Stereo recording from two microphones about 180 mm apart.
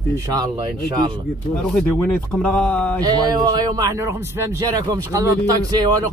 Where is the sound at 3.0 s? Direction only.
20° right (ahead or behind).